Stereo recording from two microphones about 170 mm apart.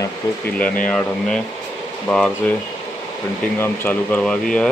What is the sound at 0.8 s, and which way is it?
Speech, 5° left (ahead or behind).